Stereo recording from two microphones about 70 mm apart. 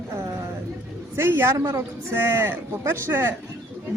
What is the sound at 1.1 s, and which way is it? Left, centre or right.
Speech, right.